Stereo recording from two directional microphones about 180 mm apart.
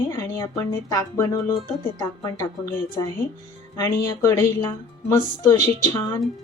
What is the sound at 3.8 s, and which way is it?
Speech, 15° left (ahead or behind).